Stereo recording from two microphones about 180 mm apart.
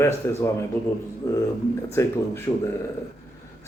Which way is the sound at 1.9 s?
15° left (ahead or behind).